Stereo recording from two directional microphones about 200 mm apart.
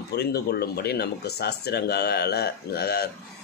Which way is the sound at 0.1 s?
55° left (ahead or behind).